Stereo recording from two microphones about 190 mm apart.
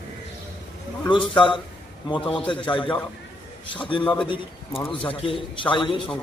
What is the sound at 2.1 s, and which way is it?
A man's voice, 25° left (ahead or behind).